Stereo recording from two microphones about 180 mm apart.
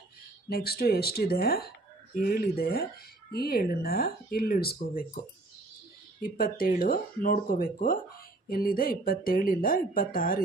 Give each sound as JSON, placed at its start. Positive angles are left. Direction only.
{"t": 0.5, "sound": "speech", "side_deg": 60}
{"t": 6.2, "sound": "a woman's voice", "side_deg": 55}